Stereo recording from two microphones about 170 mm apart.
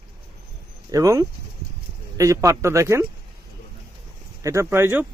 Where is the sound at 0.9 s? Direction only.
20° right (ahead or behind).